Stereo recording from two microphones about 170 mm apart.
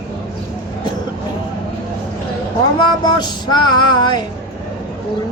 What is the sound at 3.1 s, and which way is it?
Music, 25° left (ahead or behind).